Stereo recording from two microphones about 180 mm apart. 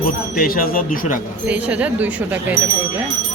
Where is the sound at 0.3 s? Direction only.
55° left (ahead or behind).